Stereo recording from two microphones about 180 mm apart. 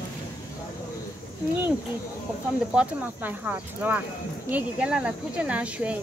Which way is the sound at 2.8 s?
5° right (ahead or behind).